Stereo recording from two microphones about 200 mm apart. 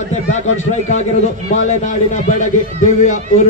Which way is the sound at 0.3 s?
35° left (ahead or behind).